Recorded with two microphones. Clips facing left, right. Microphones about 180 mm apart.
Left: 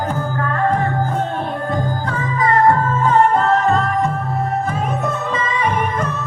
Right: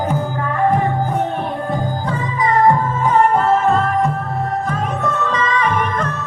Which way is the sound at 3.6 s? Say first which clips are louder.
Right 1 dB; 5° right (ahead or behind).